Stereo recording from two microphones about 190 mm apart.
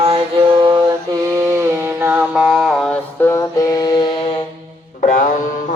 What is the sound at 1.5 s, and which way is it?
Mantra, 15° right (ahead or behind).